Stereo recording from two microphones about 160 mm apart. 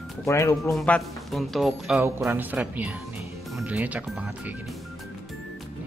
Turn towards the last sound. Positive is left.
turn(degrees=-10)  # may be behind; listen again after turning